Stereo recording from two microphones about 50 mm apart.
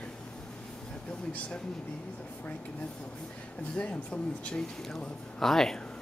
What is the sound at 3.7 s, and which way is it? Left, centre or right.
Speech, left.